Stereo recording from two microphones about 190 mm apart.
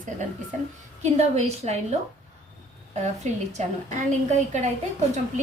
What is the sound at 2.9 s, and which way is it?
A woman's voice, 35° right (ahead or behind).